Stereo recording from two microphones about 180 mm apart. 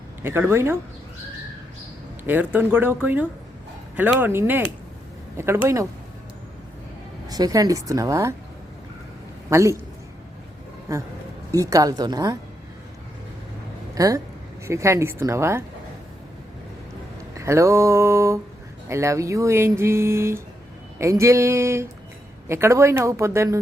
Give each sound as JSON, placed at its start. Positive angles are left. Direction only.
{"t": 0.2, "sound": "speech", "side_deg": -15}
{"t": 2.2, "sound": "speech", "side_deg": -10}
{"t": 5.6, "sound": "speech", "side_deg": -15}
{"t": 7.3, "sound": "speech", "side_deg": -20}
{"t": 9.5, "sound": "speech", "side_deg": -15}
{"t": 11.5, "sound": "speech", "side_deg": -20}
{"t": 13.9, "sound": "speech", "side_deg": -20}
{"t": 17.3, "sound": "speech", "side_deg": -15}